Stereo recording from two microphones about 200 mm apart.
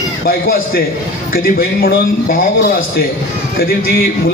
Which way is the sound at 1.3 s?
50° left (ahead or behind).